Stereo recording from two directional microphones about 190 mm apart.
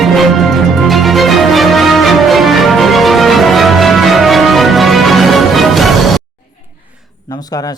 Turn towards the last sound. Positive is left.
turn(degrees=20)  # may be behind; listen again after turning